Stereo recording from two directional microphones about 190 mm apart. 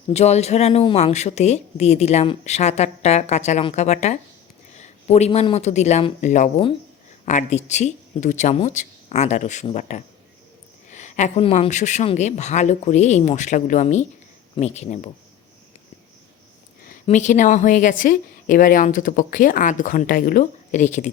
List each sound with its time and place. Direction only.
0.1 s speech: 35° left (ahead or behind)
16.8 s a woman's voice: 40° left (ahead or behind)